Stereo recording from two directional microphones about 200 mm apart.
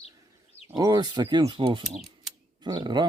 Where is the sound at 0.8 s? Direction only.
20° right (ahead or behind).